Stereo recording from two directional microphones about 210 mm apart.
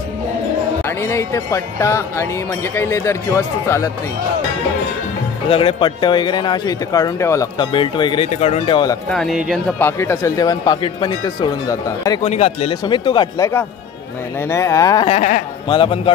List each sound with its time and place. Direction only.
0.8 s speech: 15° left (ahead or behind)
5.5 s speech: 25° left (ahead or behind)
9.1 s speech: centre (ahead or behind)
9.8 s speech: 10° left (ahead or behind)
12.2 s speech: 30° left (ahead or behind)